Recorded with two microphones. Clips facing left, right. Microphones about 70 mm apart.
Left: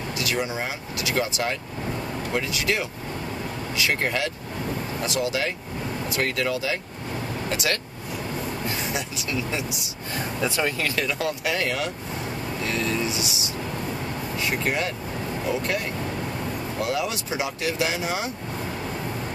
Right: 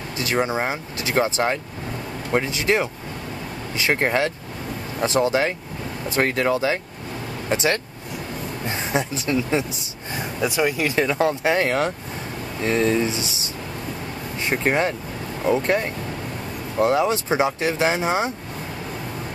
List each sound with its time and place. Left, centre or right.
0.2 s speech: right
10.1 s speech: centre
11.1 s speech: right